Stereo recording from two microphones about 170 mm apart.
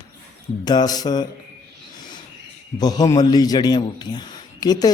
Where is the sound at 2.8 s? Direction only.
25° left (ahead or behind).